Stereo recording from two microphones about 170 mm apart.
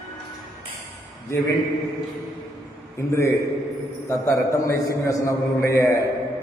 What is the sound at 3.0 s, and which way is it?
A man's voice, 15° left (ahead or behind).